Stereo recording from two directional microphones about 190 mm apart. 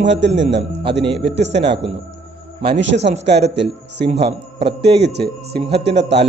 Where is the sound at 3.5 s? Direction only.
65° right (ahead or behind).